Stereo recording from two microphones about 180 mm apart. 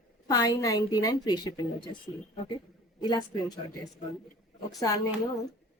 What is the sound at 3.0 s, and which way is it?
Speech, 25° left (ahead or behind).